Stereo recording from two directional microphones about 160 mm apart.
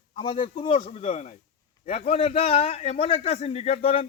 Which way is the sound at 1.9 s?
35° left (ahead or behind).